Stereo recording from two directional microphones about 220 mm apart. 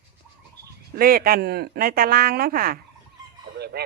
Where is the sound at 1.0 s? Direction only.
40° right (ahead or behind).